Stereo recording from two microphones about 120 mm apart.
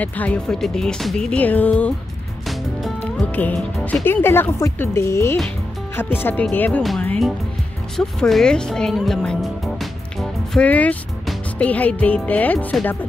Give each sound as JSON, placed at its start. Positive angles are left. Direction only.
{"t": 0.0, "sound": "speech", "side_deg": 10}
{"t": 3.0, "sound": "speech", "side_deg": 15}
{"t": 6.8, "sound": "speech", "side_deg": 0}
{"t": 10.6, "sound": "speech", "side_deg": 10}